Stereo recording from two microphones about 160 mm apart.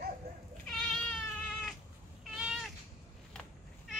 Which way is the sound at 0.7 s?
5° left (ahead or behind).